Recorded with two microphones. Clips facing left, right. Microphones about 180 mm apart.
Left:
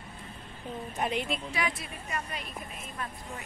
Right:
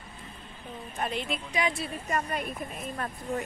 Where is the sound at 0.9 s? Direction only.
15° left (ahead or behind).